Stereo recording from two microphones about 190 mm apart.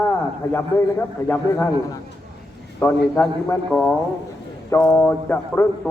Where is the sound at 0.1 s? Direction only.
10° left (ahead or behind).